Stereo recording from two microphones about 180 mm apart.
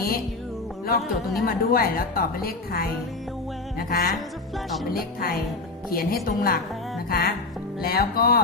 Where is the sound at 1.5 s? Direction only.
55° left (ahead or behind).